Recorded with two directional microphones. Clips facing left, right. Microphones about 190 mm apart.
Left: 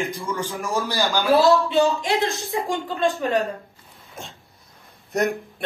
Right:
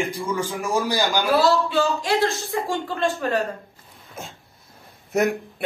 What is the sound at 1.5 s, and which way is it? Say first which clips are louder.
A woman's voice: left 3 dB; 20° left (ahead or behind).